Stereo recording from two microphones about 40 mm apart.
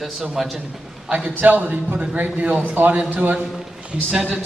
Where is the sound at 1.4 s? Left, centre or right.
Right.